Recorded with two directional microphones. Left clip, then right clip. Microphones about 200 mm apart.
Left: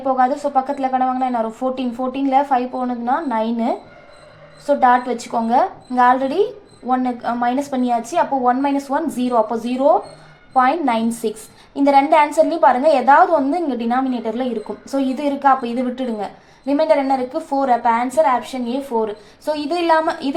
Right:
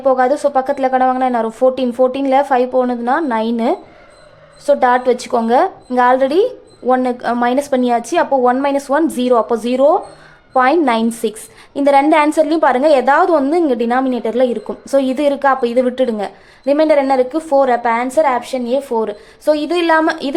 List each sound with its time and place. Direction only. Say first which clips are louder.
0.0 s a woman's voice: right 4 dB; 30° right (ahead or behind)